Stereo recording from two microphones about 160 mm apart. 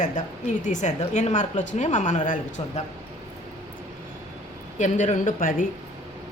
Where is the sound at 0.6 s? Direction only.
50° left (ahead or behind).